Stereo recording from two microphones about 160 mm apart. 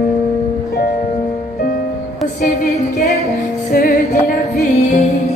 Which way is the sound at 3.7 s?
70° left (ahead or behind).